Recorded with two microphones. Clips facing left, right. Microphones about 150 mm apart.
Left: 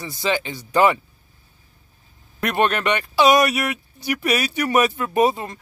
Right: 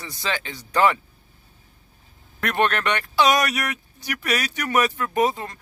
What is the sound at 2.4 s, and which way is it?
Speech, 15° left (ahead or behind).